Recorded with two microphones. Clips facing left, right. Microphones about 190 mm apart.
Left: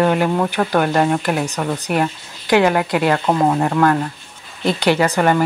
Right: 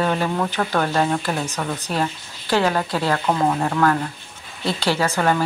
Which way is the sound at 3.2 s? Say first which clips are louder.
Left 4 dB; 25° left (ahead or behind).